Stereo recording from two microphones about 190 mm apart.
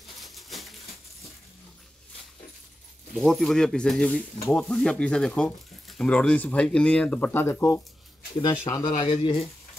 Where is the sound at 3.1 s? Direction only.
Centre (ahead or behind); by 9.5 s 30° left (ahead or behind).